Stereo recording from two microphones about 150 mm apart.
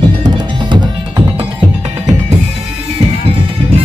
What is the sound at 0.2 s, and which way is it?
Music, 30° right (ahead or behind).